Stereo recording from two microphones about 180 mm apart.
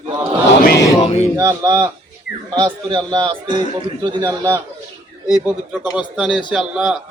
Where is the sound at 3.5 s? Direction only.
40° left (ahead or behind).